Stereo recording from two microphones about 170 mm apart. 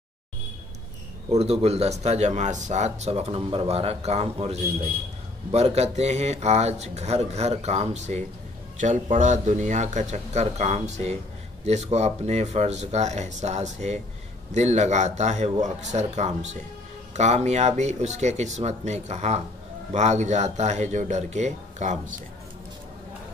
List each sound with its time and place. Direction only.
1.3 s speech: 35° right (ahead or behind)